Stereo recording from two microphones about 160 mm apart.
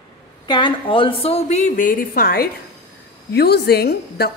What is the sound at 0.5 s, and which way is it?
A woman's voice, 30° left (ahead or behind).